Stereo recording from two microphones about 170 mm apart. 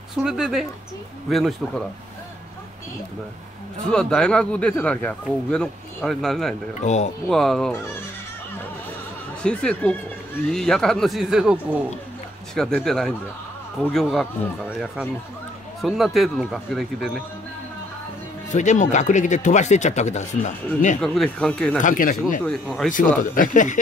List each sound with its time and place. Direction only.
0.2 s speech: 5° right (ahead or behind)
3.9 s speech: 5° left (ahead or behind)
6.8 s speech: 40° left (ahead or behind)
7.2 s speech: centre (ahead or behind)
9.4 s speech: 5° left (ahead or behind)
15.8 s speech: centre (ahead or behind)
18.5 s speech: 45° left (ahead or behind)
21.0 s speech: centre (ahead or behind)
21.7 s speech: 50° left (ahead or behind)
22.4 s speech: centre (ahead or behind)
22.8 s speech: 55° left (ahead or behind)